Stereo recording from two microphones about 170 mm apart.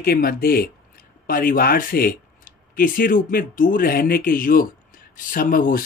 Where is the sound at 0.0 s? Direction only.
60° left (ahead or behind).